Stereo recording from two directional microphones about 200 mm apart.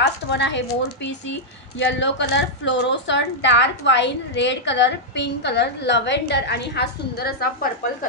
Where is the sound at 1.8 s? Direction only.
60° left (ahead or behind).